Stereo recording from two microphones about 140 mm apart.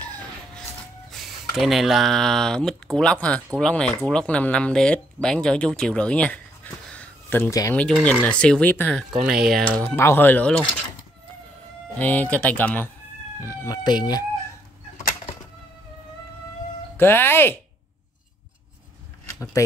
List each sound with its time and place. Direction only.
0.0 s chicken: 10° left (ahead or behind)
1.1 s speech: centre (ahead or behind)
9.1 s speech: 5° right (ahead or behind); by 10.5 s 15° left (ahead or behind)
12.0 s speech: 10° left (ahead or behind); by 14.2 s 30° left (ahead or behind)
16.9 s speech: 15° left (ahead or behind)